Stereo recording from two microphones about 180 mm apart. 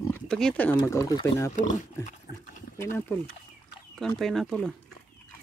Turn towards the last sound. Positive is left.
turn(degrees=0)  # may be behind; listen again after turning